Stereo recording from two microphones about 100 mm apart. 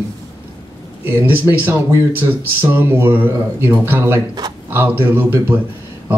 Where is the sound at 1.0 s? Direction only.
20° right (ahead or behind).